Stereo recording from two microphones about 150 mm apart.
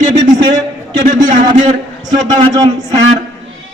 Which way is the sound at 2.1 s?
25° right (ahead or behind).